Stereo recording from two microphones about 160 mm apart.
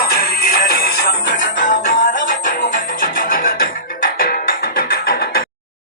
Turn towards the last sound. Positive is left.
turn(degrees=70)  # may be behind; listen again after turning